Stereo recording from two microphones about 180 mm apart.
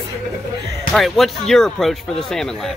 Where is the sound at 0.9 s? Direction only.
Centre (ahead or behind).